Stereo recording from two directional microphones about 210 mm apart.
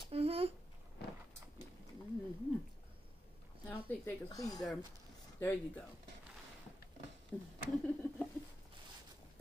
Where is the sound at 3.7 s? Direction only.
15° left (ahead or behind).